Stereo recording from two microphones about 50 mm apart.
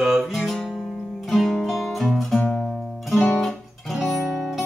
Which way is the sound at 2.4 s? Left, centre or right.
Centre.